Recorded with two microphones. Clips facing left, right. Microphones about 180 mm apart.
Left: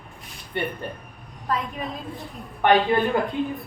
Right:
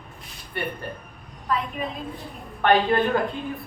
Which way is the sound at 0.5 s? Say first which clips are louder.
Left 2 dB; 20° left (ahead or behind).